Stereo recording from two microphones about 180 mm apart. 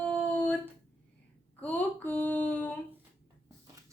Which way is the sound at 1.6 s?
10° left (ahead or behind).